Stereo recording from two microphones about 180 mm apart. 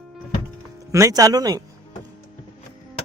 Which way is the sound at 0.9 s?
15° right (ahead or behind).